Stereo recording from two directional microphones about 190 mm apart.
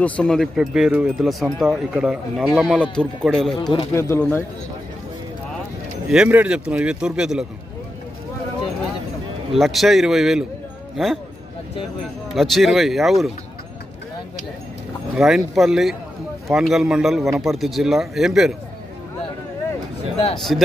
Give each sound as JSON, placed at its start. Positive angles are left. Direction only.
{"t": 0.0, "sound": "speech", "side_deg": 5}
{"t": 3.5, "sound": "speech", "side_deg": 25}
{"t": 3.9, "sound": "speech", "side_deg": 15}
{"t": 6.0, "sound": "speech", "side_deg": -5}
{"t": 9.5, "sound": "speech", "side_deg": 0}
{"t": 12.4, "sound": "speech", "side_deg": 0}
{"t": 15.1, "sound": "speech", "side_deg": 0}
{"t": 20.3, "sound": "speech", "side_deg": 0}